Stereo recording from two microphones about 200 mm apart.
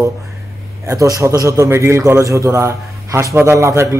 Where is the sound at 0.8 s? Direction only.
15° right (ahead or behind).